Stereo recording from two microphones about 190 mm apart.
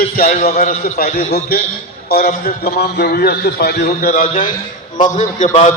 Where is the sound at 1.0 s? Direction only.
55° left (ahead or behind).